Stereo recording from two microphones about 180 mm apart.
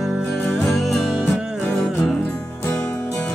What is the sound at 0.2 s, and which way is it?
Music, 5° left (ahead or behind).